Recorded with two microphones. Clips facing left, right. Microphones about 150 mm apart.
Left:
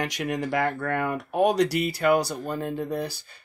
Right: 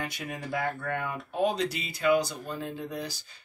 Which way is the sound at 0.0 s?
80° left.